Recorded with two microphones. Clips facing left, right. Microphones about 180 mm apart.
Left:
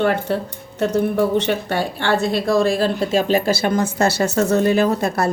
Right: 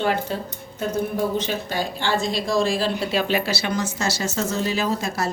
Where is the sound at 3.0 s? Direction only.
45° left (ahead or behind).